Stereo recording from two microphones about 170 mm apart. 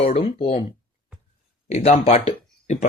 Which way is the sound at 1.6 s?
40° left (ahead or behind).